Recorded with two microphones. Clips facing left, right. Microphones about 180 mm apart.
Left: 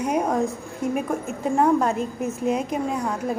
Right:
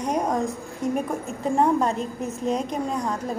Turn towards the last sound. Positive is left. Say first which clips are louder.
# left 1 dB
turn(degrees=5)  # may be behind; listen again after turning